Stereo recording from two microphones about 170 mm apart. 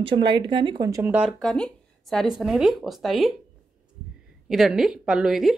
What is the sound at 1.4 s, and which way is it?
Speech, 5° left (ahead or behind).